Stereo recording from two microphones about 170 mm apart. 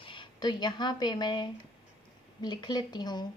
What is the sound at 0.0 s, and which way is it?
Speech, 30° left (ahead or behind).